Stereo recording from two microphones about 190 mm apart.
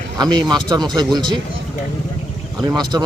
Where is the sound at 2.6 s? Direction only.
20° right (ahead or behind).